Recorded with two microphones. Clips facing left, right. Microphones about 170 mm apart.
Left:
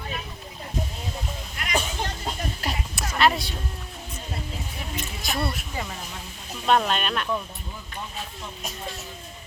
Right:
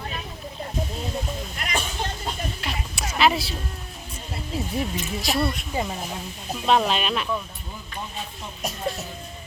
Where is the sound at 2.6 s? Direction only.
40° left (ahead or behind).